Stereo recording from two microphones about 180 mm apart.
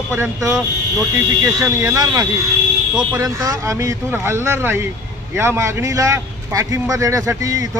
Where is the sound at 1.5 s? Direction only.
15° right (ahead or behind).